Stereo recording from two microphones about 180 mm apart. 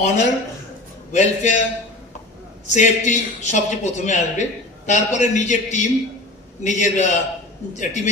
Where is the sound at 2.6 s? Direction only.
40° left (ahead or behind).